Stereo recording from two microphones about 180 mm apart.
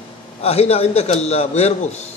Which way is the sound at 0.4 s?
35° left (ahead or behind).